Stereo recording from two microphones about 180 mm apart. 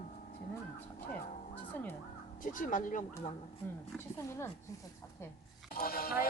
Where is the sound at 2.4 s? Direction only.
45° left (ahead or behind).